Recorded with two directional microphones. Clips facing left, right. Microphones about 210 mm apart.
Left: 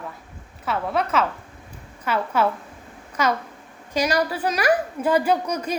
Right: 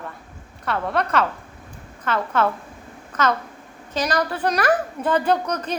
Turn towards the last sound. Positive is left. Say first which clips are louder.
# right 1 dB
turn(degrees=10)  # may be behind; listen again after turning